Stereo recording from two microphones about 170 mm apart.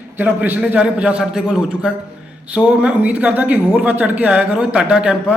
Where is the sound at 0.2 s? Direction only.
10° right (ahead or behind).